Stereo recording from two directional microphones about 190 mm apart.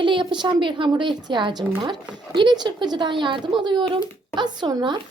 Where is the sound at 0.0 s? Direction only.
25° right (ahead or behind).